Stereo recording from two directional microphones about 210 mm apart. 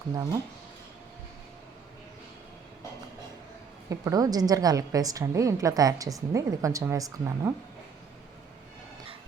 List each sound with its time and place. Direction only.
0.1 s speech: 20° right (ahead or behind)
3.8 s a woman's voice: 15° right (ahead or behind)